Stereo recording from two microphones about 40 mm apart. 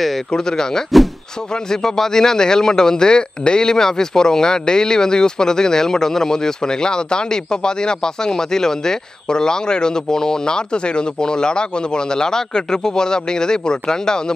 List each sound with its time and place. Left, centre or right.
0.3 s a man's voice: centre